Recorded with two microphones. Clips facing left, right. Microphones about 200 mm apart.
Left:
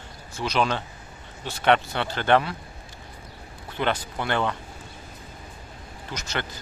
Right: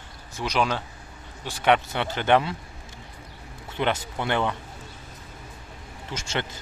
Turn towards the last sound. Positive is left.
turn(degrees=-25)  # may be behind; listen again after turning